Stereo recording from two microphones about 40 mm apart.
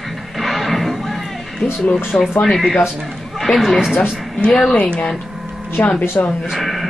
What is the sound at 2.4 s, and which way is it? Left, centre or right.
Speech, centre.